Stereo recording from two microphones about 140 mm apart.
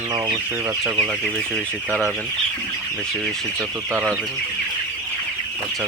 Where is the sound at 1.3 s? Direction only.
5° left (ahead or behind).